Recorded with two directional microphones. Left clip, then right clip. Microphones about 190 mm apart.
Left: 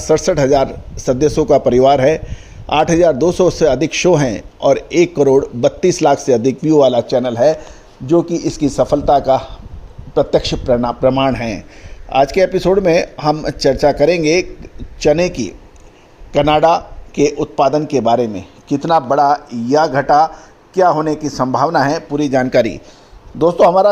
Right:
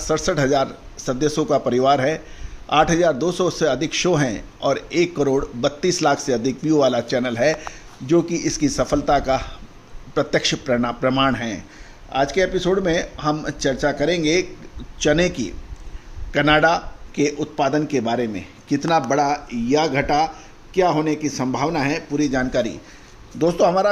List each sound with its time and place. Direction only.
0.0 s a man's voice: 30° left (ahead or behind)
7.1 s a man's voice: 15° left (ahead or behind); by 22.8 s 30° left (ahead or behind)
23.4 s a man's voice: 20° left (ahead or behind)